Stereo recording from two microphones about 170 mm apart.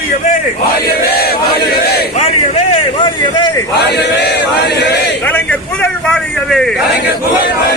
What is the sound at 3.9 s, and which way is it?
Chant, 75° left (ahead or behind).